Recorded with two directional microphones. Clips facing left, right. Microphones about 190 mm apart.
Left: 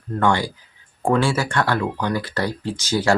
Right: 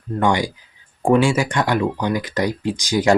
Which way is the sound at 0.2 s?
15° right (ahead or behind).